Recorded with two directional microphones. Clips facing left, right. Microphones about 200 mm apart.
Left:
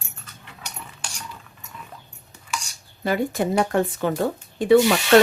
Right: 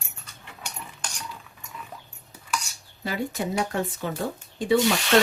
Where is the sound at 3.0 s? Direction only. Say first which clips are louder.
Left 6 dB; 55° left (ahead or behind).